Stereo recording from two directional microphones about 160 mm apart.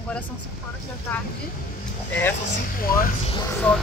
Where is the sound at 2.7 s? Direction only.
65° left (ahead or behind).